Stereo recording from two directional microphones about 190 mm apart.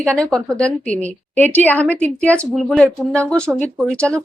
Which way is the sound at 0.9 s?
35° right (ahead or behind).